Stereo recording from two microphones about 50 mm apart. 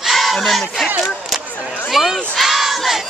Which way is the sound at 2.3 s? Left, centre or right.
Centre.